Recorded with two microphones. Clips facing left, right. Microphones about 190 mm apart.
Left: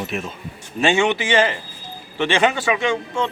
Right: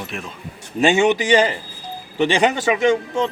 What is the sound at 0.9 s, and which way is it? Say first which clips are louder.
Speech: right 5 dB; 40° right (ahead or behind).